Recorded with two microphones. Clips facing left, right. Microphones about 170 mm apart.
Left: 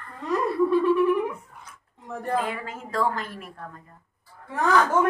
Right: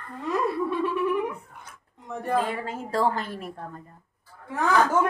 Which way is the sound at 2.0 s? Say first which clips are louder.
Right 1 dB; centre (ahead or behind).